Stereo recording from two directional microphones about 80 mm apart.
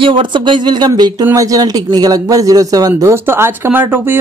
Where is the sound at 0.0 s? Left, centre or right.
Right.